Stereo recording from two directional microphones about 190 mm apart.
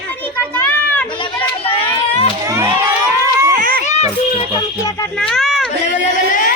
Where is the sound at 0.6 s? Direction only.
10° left (ahead or behind).